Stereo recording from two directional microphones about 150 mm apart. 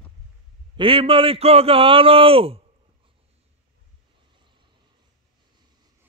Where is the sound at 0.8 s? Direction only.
35° right (ahead or behind).